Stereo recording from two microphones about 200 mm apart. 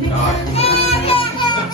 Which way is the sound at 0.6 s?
30° left (ahead or behind).